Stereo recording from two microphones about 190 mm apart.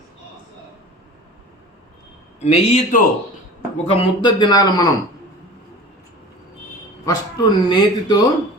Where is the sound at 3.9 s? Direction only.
25° left (ahead or behind).